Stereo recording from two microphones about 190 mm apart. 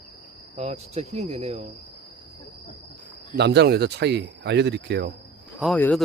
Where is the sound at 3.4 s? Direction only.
65° right (ahead or behind).